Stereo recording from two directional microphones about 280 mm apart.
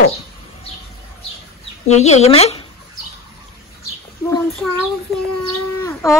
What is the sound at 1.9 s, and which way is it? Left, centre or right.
Speech, left.